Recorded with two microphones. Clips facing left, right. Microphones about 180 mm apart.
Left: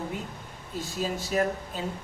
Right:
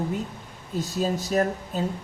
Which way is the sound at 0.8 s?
40° right (ahead or behind).